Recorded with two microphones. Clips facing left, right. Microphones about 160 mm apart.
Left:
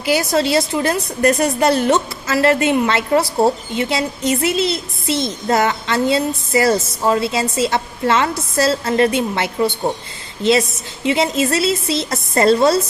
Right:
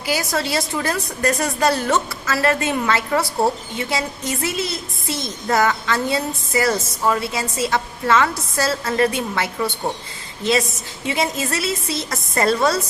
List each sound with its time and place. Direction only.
0.0 s a woman's voice: 25° left (ahead or behind)
11.1 s a woman's voice: 25° left (ahead or behind)